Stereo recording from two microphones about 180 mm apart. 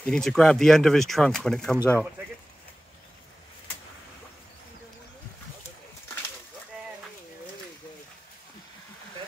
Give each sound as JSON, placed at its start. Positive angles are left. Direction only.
{"t": 0.0, "sound": "speech", "side_deg": 5}